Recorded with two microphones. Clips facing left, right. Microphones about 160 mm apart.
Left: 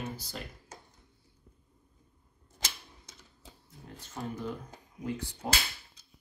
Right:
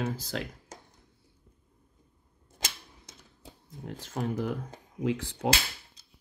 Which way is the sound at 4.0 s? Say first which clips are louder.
Right 6 dB; 75° right (ahead or behind).